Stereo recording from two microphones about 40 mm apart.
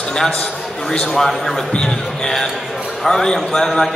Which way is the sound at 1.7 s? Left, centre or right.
Left.